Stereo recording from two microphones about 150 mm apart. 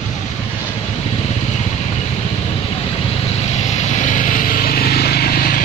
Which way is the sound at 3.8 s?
55° left (ahead or behind).